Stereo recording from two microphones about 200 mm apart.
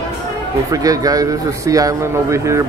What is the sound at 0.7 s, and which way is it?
A man's voice, 15° right (ahead or behind).